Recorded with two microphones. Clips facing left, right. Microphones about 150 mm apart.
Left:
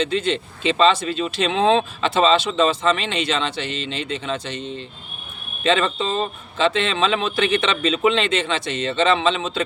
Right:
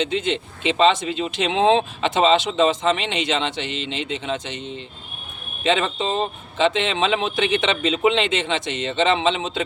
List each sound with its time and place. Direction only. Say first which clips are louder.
0.0 s speech: left 1 dB; 20° right (ahead or behind)